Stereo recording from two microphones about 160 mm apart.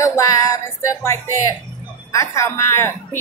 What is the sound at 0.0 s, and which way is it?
Female singing, 20° left (ahead or behind).